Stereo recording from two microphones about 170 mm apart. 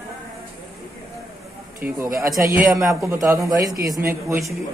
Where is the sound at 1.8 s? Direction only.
65° right (ahead or behind).